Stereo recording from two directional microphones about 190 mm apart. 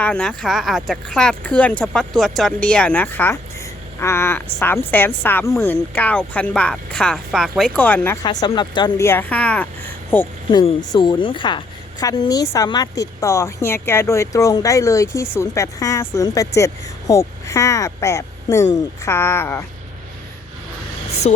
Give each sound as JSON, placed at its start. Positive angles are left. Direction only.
{"t": 0.0, "sound": "a woman's voice", "side_deg": 5}
{"t": 8.2, "sound": "a woman's voice", "side_deg": 20}
{"t": 10.5, "sound": "a woman's voice", "side_deg": 25}
{"t": 21.2, "sound": "speech", "side_deg": 35}